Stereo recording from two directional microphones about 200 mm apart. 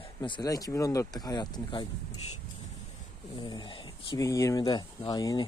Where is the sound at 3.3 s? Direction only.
20° left (ahead or behind).